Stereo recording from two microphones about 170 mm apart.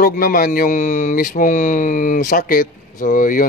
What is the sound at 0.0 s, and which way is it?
Speech, 55° left (ahead or behind).